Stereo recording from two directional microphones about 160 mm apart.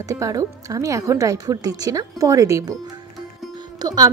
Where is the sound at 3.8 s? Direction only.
25° right (ahead or behind).